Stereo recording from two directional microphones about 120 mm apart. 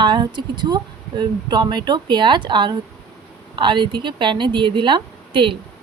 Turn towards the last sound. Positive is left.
turn(degrees=-45)  # may be behind; listen again after turning